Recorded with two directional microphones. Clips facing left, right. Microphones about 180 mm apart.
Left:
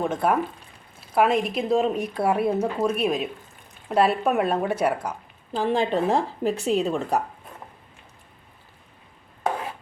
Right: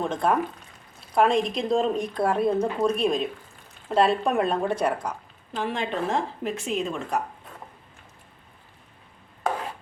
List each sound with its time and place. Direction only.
0.0 s speech: 10° left (ahead or behind)
5.5 s speech: 35° left (ahead or behind)